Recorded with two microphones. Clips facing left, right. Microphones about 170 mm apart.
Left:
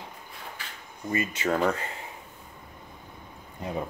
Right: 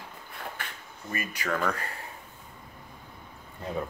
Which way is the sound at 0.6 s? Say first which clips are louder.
Right 3 dB; 55° right (ahead or behind).